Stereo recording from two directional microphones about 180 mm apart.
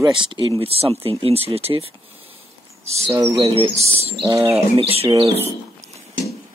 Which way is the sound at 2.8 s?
35° right (ahead or behind).